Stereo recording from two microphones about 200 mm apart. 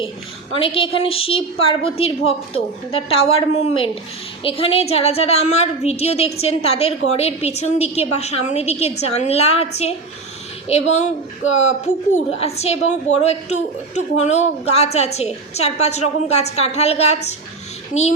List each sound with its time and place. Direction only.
0.5 s a woman's voice: 25° left (ahead or behind)
12.1 s a woman's voice: 30° left (ahead or behind)